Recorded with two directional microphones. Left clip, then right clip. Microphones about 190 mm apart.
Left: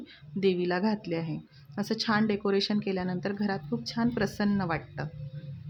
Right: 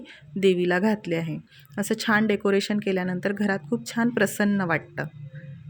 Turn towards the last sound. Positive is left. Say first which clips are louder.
# right 6 dB
turn(degrees=-20)  # may be behind; listen again after turning